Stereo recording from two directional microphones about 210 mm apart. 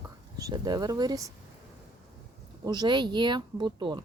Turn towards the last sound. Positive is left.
turn(degrees=-20)  # may be behind; listen again after turning